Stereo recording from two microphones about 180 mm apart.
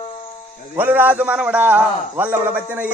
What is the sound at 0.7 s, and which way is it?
A man's voice, 10° right (ahead or behind).